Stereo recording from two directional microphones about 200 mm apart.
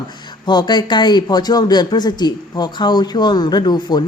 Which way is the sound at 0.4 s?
20° left (ahead or behind).